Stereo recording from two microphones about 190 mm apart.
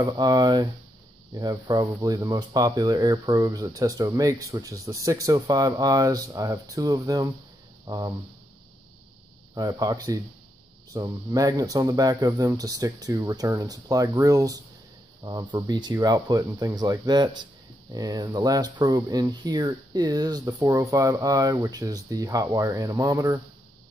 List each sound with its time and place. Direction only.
0.0 s speech: 20° right (ahead or behind)
9.6 s speech: 20° right (ahead or behind)